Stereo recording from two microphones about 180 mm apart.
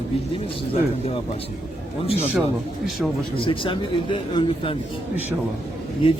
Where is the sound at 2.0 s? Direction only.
35° left (ahead or behind).